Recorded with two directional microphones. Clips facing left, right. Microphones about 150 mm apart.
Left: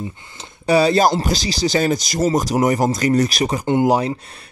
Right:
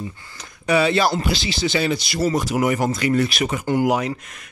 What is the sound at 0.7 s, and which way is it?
Speech, 35° left (ahead or behind).